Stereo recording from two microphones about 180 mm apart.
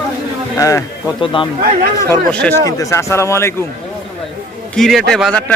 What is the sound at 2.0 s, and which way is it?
Speech, 10° left (ahead or behind).